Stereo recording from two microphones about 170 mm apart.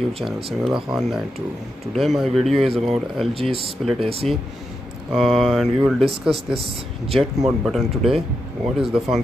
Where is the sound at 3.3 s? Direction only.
35° right (ahead or behind).